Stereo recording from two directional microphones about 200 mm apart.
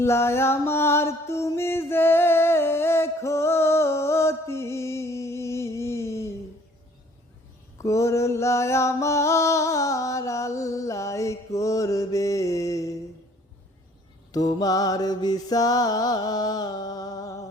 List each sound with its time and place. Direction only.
0.0 s music: 15° left (ahead or behind)
7.8 s music: 15° left (ahead or behind)
14.3 s mantra: 20° left (ahead or behind)